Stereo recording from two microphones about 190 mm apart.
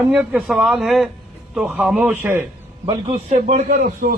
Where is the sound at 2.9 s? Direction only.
35° right (ahead or behind).